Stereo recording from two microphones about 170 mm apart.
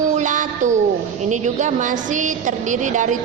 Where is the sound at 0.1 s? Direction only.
45° right (ahead or behind).